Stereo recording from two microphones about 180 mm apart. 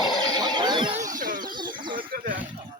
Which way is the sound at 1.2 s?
50° right (ahead or behind).